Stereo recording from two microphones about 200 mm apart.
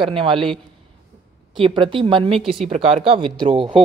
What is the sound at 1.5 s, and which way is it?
Speech, 25° right (ahead or behind).